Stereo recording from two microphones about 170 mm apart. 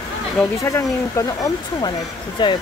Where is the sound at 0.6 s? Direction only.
20° left (ahead or behind).